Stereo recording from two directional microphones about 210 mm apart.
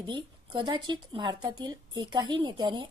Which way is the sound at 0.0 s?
25° right (ahead or behind).